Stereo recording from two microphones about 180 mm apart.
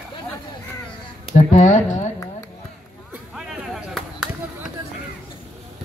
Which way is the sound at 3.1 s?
5° right (ahead or behind).